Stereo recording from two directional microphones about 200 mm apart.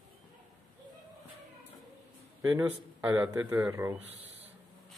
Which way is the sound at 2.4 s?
15° right (ahead or behind).